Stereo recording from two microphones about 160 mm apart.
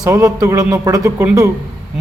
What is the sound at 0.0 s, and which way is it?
A man's voice, 20° right (ahead or behind).